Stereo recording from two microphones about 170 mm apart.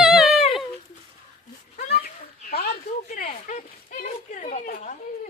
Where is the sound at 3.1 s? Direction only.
55° left (ahead or behind).